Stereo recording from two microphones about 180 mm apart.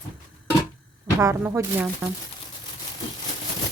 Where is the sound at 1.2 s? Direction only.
15° right (ahead or behind).